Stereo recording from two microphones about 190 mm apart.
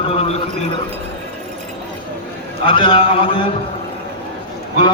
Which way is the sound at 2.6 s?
30° left (ahead or behind).